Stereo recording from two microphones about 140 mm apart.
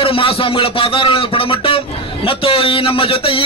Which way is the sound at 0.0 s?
40° left (ahead or behind).